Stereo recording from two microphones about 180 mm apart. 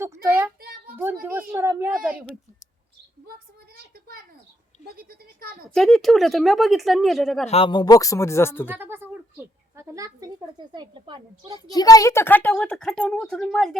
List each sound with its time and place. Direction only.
0.0 s child singing: 15° right (ahead or behind)
0.6 s child singing: 55° right (ahead or behind)
1.2 s a woman's voice: 10° right (ahead or behind)
4.9 s speech: 55° right (ahead or behind)
5.7 s speech: centre (ahead or behind)
7.4 s speech: 30° left (ahead or behind); by 8.7 s 15° left (ahead or behind)
8.7 s speech: 10° right (ahead or behind); by 11.6 s 25° right (ahead or behind)
11.6 s a woman's voice: 20° left (ahead or behind); by 13.7 s 5° left (ahead or behind)